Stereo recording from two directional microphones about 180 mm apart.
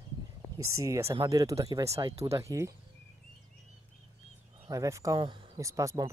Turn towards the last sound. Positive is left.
turn(degrees=-20)  # may be behind; listen again after turning